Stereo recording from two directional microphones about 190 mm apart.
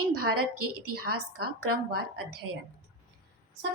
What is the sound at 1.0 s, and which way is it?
Speech, 55° right (ahead or behind).